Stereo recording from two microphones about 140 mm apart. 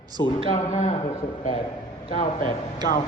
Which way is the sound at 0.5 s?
55° left (ahead or behind).